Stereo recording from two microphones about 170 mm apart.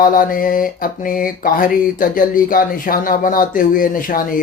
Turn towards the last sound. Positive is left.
turn(degrees=55)  # may be behind; listen again after turning